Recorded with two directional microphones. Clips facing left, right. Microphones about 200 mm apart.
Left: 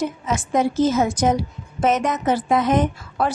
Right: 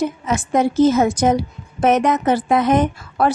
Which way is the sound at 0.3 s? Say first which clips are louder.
Right 2 dB; 60° right (ahead or behind).